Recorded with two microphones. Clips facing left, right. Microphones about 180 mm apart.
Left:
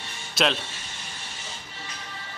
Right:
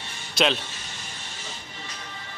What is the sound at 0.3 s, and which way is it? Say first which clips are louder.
Music: right 1 dB; centre (ahead or behind).